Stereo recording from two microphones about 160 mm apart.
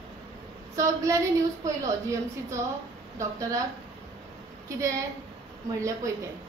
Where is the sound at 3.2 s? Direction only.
20° right (ahead or behind).